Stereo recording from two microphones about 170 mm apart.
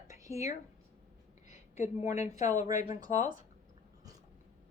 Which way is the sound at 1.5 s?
40° left (ahead or behind).